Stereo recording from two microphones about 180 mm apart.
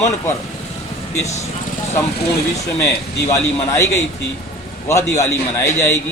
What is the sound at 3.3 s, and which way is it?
Speech, 15° left (ahead or behind).